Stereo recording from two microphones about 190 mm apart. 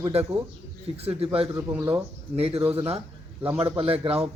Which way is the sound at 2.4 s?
30° right (ahead or behind).